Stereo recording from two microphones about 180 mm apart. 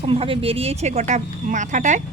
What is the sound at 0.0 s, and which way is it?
Speech, 30° right (ahead or behind).